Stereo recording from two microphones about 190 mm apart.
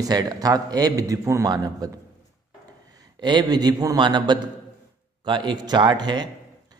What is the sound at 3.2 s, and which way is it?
A man's voice, 20° right (ahead or behind).